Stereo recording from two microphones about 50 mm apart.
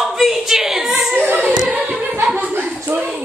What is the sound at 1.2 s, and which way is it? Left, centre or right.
Singing, right.